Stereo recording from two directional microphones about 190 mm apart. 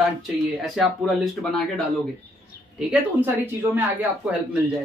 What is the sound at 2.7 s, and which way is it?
Speech, 10° right (ahead or behind).